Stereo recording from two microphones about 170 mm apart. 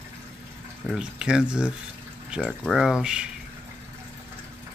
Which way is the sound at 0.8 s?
5° right (ahead or behind).